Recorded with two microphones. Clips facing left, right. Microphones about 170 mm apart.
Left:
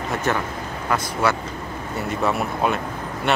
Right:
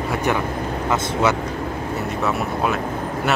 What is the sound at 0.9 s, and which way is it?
Speech, 20° right (ahead or behind).